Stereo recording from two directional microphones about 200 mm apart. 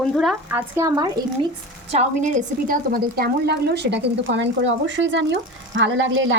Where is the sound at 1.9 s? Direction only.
35° right (ahead or behind).